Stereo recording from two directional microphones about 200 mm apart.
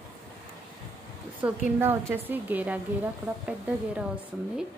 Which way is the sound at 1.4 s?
10° right (ahead or behind).